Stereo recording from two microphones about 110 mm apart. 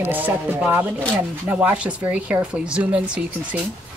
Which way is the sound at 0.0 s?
15° right (ahead or behind).